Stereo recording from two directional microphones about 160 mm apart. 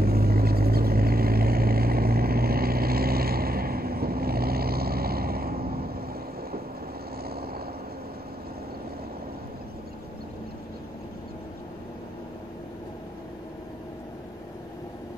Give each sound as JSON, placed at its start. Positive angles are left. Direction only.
{"t": 0.0, "sound": "vehicle", "side_deg": -70}
{"t": 7.2, "sound": "vehicle", "side_deg": -75}